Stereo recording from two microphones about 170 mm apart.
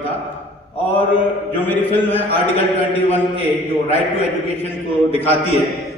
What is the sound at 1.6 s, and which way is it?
A man's voice, 10° left (ahead or behind).